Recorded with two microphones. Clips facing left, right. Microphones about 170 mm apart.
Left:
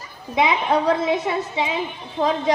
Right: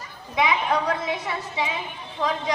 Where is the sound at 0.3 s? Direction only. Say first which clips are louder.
Left 3 dB; 25° left (ahead or behind).